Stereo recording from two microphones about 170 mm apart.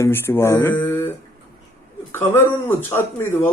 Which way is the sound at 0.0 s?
15° left (ahead or behind).